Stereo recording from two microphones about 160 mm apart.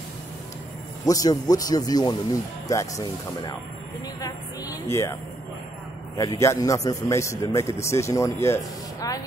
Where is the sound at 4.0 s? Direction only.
25° left (ahead or behind).